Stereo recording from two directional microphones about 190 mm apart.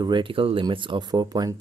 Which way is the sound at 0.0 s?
25° right (ahead or behind).